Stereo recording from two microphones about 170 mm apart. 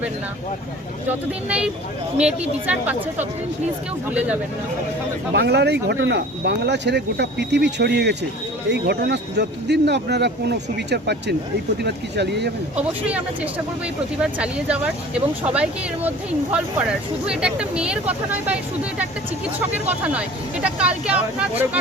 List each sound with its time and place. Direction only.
1.5 s speech: 5° right (ahead or behind)
5.3 s speech: 80° right
12.7 s speech: 10° right (ahead or behind)
16.0 s speech: 5° right (ahead or behind)
19.9 s speech: 5° right (ahead or behind)